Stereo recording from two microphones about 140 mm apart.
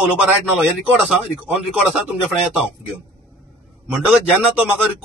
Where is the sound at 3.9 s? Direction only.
5° right (ahead or behind).